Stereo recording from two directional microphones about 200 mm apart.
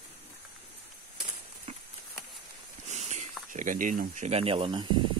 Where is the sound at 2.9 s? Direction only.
35° right (ahead or behind).